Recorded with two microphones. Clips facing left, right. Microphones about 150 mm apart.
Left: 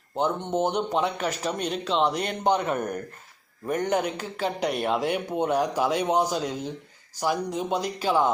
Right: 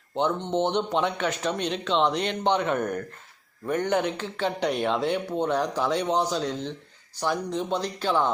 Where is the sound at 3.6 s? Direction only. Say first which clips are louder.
Even; 35° left (ahead or behind).